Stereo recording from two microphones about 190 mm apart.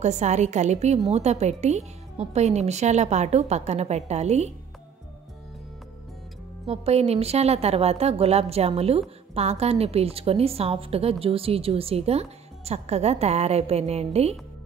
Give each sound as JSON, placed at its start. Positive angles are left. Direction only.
{"t": 0.0, "sound": "a woman's voice", "side_deg": -35}
{"t": 6.6, "sound": "a woman's voice", "side_deg": -30}